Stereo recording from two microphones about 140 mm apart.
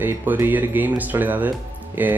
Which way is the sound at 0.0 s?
15° right (ahead or behind).